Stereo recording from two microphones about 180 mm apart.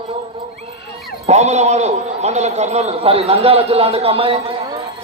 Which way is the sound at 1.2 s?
35° right (ahead or behind).